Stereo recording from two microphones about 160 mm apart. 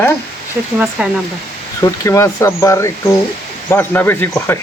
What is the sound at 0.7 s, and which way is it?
Speech, 10° right (ahead or behind).